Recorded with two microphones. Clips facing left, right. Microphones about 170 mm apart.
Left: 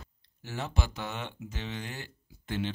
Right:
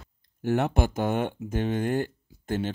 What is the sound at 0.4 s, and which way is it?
Speech, 60° right (ahead or behind).